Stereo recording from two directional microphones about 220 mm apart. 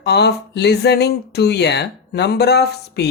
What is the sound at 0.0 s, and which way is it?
Speech, 50° left (ahead or behind).